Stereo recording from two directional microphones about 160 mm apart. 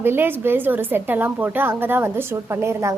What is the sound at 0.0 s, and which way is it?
A woman's voice, 15° right (ahead or behind).